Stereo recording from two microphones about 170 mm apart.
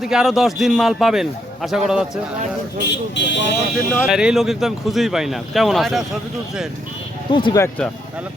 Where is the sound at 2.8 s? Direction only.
90° left.